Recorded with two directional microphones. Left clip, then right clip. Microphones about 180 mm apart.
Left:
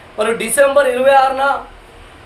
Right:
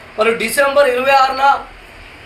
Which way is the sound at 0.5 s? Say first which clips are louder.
Left 2 dB; 30° left (ahead or behind).